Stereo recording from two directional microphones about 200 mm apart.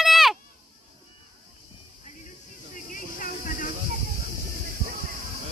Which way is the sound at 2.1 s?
40° left (ahead or behind).